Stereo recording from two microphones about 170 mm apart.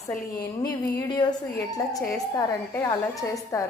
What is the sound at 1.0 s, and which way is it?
Speech, 25° left (ahead or behind).